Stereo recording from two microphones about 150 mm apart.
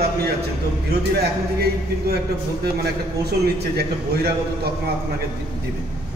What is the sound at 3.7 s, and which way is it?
Speech, 90° right.